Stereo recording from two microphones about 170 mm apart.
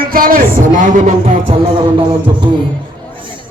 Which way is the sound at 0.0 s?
55° right (ahead or behind).